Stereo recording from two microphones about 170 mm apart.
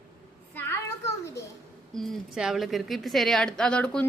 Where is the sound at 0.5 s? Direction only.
15° left (ahead or behind).